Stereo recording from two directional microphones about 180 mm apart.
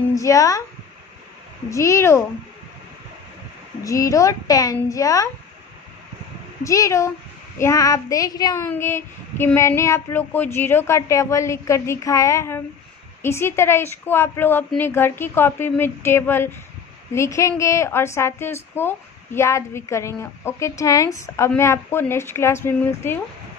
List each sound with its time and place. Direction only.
0.1 s a woman's voice: 20° left (ahead or behind)
1.7 s a woman's voice: 15° left (ahead or behind)
3.8 s a woman's voice: 15° left (ahead or behind)
6.6 s a woman's voice: 15° left (ahead or behind)
7.5 s child singing: 15° left (ahead or behind)
8.6 s a woman's voice: 15° left (ahead or behind)